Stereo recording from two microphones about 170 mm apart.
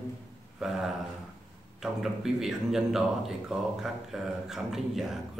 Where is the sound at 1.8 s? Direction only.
Centre (ahead or behind).